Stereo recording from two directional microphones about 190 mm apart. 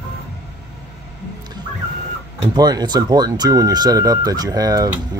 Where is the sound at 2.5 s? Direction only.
20° right (ahead or behind).